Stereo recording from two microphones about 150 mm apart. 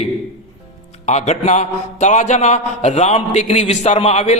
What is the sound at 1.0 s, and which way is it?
A man's voice, 50° left (ahead or behind).